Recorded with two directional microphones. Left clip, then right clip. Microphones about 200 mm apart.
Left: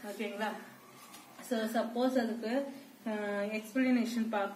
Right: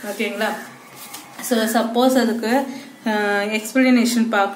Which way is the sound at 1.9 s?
25° right (ahead or behind).